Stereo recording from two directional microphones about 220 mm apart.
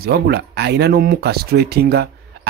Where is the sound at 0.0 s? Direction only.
45° right (ahead or behind).